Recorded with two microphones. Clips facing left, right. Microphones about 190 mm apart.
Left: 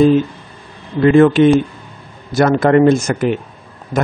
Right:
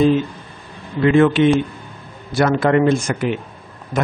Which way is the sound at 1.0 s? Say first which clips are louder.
Left 4 dB; 40° left (ahead or behind).